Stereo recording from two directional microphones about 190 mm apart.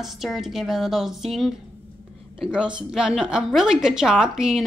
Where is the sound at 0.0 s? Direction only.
Centre (ahead or behind).